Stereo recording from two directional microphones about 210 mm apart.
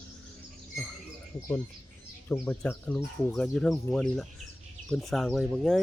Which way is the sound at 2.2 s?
10° left (ahead or behind).